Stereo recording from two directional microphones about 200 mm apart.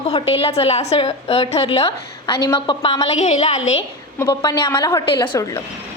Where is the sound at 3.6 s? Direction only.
75° left (ahead or behind).